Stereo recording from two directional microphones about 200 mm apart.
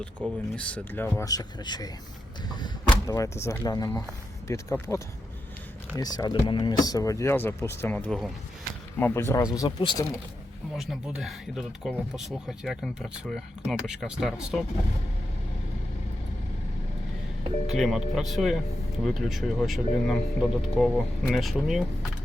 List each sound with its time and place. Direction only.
0.2 s speech: 5° left (ahead or behind); by 10.0 s 25° left (ahead or behind)
10.8 s speech: 5° right (ahead or behind)
17.7 s speech: centre (ahead or behind)